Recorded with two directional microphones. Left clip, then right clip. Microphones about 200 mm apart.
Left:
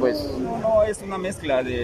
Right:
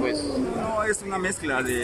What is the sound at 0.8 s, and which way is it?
Speech, 15° left (ahead or behind).